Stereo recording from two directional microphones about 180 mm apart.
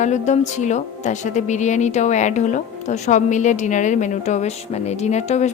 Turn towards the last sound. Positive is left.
turn(degrees=40)  # may be behind; listen again after turning